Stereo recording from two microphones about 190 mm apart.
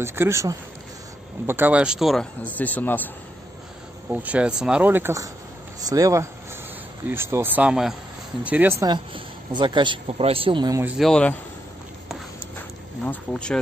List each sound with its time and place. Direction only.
0.0 s speech: 15° right (ahead or behind); by 3.1 s 10° left (ahead or behind)
4.1 s speech: 10° right (ahead or behind); by 10.8 s 25° right (ahead or behind)
11.0 s speech: 5° left (ahead or behind)
13.0 s speech: 5° left (ahead or behind)